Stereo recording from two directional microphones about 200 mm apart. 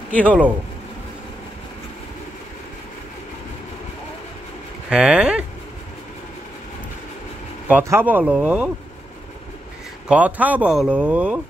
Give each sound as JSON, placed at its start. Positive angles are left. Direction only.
{"t": 0.1, "sound": "speech", "side_deg": -5}
{"t": 4.8, "sound": "speech", "side_deg": -5}
{"t": 7.6, "sound": "speech", "side_deg": -10}
{"t": 10.0, "sound": "speech", "side_deg": -5}